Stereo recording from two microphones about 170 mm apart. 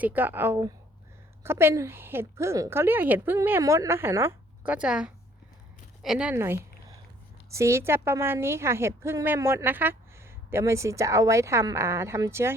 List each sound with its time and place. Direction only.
0.0 s a woman's voice: 10° right (ahead or behind)